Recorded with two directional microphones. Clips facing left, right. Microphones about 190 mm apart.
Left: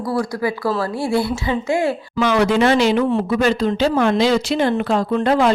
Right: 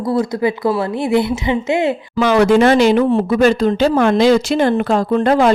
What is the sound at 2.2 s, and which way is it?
Speech, 50° right (ahead or behind).